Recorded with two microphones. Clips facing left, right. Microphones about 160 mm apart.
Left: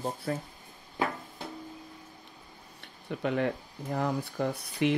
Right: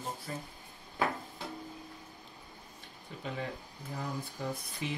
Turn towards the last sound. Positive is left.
turn(degrees=70)  # may be behind; listen again after turning